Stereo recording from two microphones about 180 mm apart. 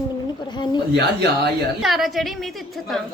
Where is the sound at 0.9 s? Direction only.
65° right (ahead or behind).